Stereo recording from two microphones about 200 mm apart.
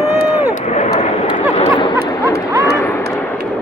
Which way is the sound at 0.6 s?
35° left (ahead or behind).